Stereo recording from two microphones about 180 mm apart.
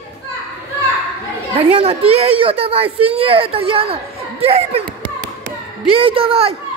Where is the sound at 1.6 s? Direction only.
35° right (ahead or behind).